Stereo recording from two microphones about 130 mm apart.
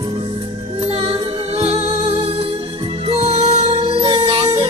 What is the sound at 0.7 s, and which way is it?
Music, 50° right (ahead or behind).